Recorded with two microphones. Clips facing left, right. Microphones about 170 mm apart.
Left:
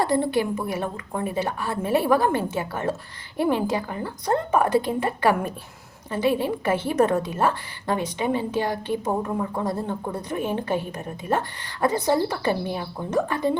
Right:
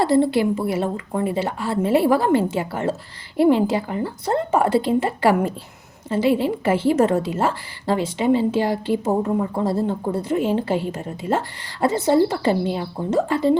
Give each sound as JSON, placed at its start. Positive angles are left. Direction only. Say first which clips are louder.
{"t": 0.0, "sound": "a woman's voice", "louder": "right 5 dB", "side_deg": -25}